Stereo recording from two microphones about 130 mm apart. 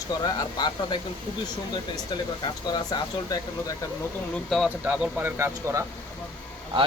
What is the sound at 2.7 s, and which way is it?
Speech, 30° left (ahead or behind).